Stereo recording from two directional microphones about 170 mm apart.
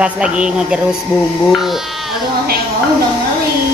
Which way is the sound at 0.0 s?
5° right (ahead or behind).